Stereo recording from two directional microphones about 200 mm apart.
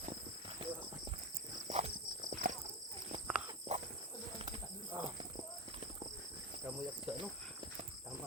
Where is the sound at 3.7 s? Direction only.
30° right (ahead or behind).